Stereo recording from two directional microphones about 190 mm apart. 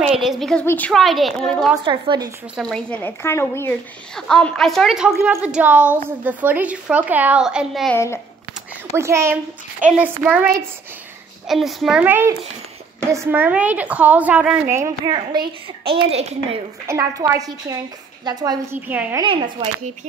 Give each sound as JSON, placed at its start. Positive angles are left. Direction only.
{"t": 0.0, "sound": "a woman's voice", "side_deg": 0}
{"t": 1.9, "sound": "speech", "side_deg": -20}
{"t": 2.5, "sound": "a woman's voice", "side_deg": 0}
{"t": 7.9, "sound": "a child's voice", "side_deg": 15}
{"t": 8.9, "sound": "a woman's voice", "side_deg": -15}
{"t": 15.3, "sound": "a child's voice", "side_deg": -25}
{"t": 16.8, "sound": "a woman's voice", "side_deg": -15}
{"t": 18.8, "sound": "a woman's voice", "side_deg": -10}
{"t": 19.2, "sound": "speech", "side_deg": -25}